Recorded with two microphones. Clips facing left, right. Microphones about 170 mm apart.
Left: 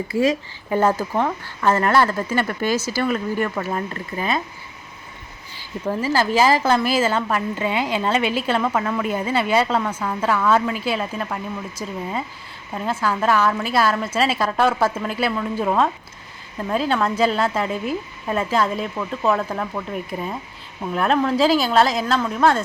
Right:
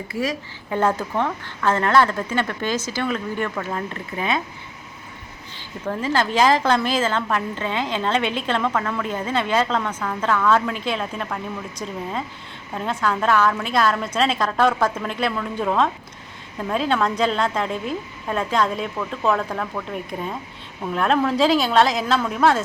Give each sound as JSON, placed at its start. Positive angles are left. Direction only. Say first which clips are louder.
{"t": 0.1, "sound": "speech", "louder": "left 6 dB", "side_deg": 25}
{"t": 0.7, "sound": "a woman's voice", "louder": "left 2 dB", "side_deg": 10}
{"t": 5.5, "sound": "a woman's voice", "louder": "left 3 dB", "side_deg": 10}